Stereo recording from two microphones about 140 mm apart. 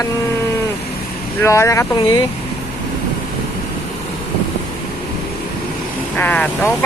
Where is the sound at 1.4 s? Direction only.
20° left (ahead or behind).